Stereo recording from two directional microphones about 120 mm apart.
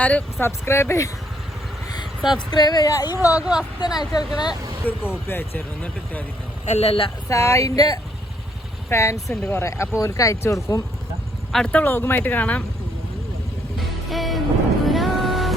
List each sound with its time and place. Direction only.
0.0 s speech: 10° left (ahead or behind)
2.5 s female singing: 35° left (ahead or behind)
3.3 s speech: 5° right (ahead or behind)
3.8 s female singing: 35° left (ahead or behind)
4.9 s speech: 15° left (ahead or behind)
6.7 s speech: 60° left (ahead or behind)
7.3 s speech: 25° left (ahead or behind)
11.5 s speech: 10° left (ahead or behind)
13.7 s music: centre (ahead or behind)